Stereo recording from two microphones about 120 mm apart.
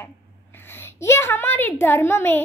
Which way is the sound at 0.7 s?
20° left (ahead or behind).